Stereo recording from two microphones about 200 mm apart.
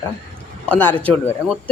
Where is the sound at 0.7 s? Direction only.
10° left (ahead or behind).